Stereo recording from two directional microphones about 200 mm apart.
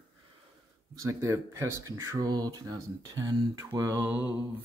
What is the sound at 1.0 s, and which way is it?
Speech, 15° right (ahead or behind).